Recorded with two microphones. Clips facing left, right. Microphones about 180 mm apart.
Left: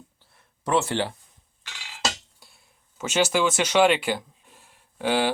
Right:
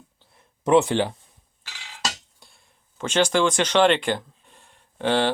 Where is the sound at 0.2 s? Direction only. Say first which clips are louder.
Right 4 dB; 20° right (ahead or behind).